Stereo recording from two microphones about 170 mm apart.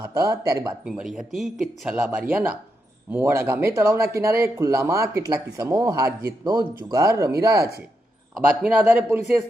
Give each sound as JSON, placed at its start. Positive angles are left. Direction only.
{"t": 0.0, "sound": "speech", "side_deg": -20}
{"t": 0.9, "sound": "speech", "side_deg": -5}